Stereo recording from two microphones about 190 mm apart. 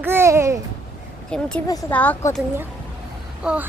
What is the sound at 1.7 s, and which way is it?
Speech, 20° left (ahead or behind).